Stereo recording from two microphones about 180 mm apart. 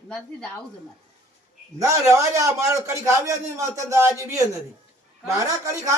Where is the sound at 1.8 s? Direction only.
15° right (ahead or behind).